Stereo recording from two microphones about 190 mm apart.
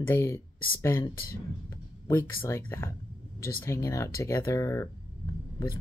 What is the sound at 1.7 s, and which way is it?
Speech, 10° left (ahead or behind).